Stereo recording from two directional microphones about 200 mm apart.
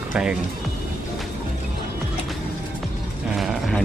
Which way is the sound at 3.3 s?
Centre (ahead or behind).